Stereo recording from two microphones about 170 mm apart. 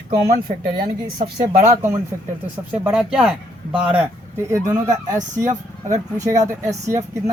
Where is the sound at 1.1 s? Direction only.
40° right (ahead or behind).